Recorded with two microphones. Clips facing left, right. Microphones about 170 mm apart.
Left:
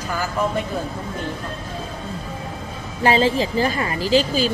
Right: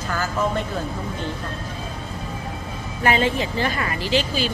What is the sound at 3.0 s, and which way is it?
A woman's voice, 30° left (ahead or behind).